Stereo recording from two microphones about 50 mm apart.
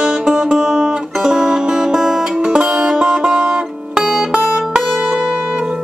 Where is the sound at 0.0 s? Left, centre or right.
Centre.